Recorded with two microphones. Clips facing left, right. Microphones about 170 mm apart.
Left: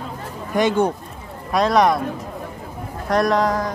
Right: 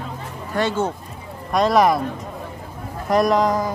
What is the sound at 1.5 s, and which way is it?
Speech, centre (ahead or behind).